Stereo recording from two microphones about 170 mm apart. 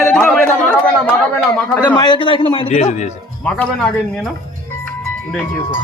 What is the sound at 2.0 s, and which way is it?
A man's voice, 30° left (ahead or behind).